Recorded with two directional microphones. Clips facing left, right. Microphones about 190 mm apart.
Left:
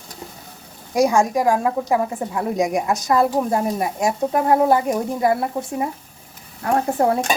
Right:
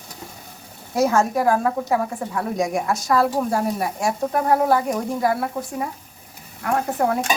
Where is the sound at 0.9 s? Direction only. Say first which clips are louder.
Left 2 dB; 15° left (ahead or behind); by 7.2 s 30° left (ahead or behind).